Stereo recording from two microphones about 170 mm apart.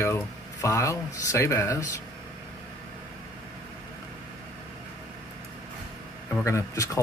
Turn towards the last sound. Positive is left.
turn(degrees=15)  # may be behind; listen again after turning